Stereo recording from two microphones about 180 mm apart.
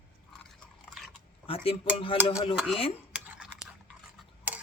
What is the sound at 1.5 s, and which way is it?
Speech, 30° left (ahead or behind).